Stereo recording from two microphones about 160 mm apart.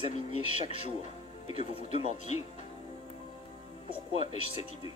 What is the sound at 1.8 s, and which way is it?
Speech, 40° left (ahead or behind).